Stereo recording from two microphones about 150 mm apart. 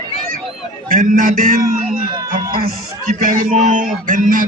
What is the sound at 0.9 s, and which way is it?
Speech, 70° right (ahead or behind).